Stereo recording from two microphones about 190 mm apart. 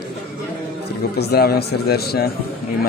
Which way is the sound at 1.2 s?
55° left (ahead or behind).